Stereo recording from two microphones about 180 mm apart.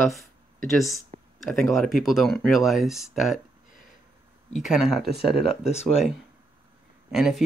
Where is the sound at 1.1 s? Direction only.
40° right (ahead or behind).